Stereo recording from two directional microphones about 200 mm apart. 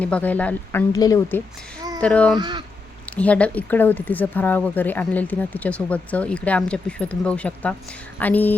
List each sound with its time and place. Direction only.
0.0 s speech: 5° left (ahead or behind)
2.0 s speech: 5° left (ahead or behind)
2.4 s speech: 20° right (ahead or behind)
3.1 s speech: 5° left (ahead or behind)